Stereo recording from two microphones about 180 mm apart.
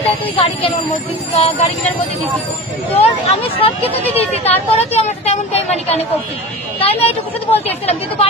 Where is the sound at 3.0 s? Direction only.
35° left (ahead or behind).